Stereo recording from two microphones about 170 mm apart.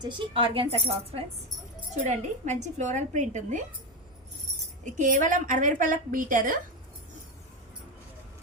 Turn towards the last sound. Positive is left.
turn(degrees=-50)  # may be behind; listen again after turning